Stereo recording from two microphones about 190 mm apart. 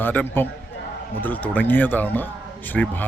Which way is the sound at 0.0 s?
10° left (ahead or behind).